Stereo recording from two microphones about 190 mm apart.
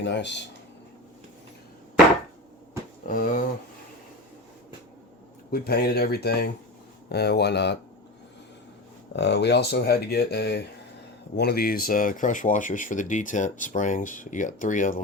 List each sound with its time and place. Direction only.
0.0 s speech: 65° left (ahead or behind)
3.1 s speech: 45° left (ahead or behind)
5.5 s speech: 55° left (ahead or behind)
9.1 s speech: 65° left (ahead or behind); by 15.0 s 45° left (ahead or behind)